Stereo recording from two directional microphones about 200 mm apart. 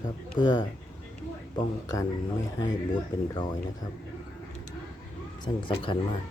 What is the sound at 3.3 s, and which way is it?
Speech, 20° left (ahead or behind).